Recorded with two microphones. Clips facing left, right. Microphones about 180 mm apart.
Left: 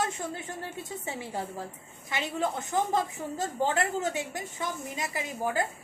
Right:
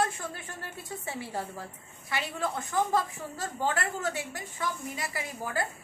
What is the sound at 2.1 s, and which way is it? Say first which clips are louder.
A woman's voice: left 2 dB; 20° left (ahead or behind).